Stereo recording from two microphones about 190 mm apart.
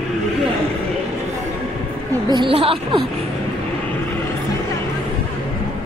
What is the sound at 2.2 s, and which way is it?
Speech, 25° right (ahead or behind).